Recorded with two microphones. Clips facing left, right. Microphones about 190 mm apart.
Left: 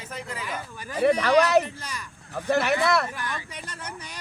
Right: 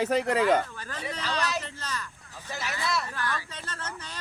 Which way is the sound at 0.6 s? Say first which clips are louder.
Left 2 dB; 10° left (ahead or behind).